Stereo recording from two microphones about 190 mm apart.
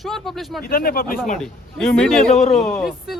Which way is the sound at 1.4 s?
Centre (ahead or behind).